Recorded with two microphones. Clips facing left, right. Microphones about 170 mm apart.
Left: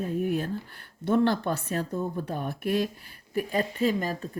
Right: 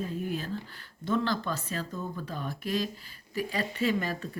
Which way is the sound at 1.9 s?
45° left (ahead or behind).